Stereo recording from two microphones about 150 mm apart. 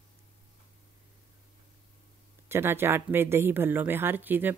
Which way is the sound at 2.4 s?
15° right (ahead or behind).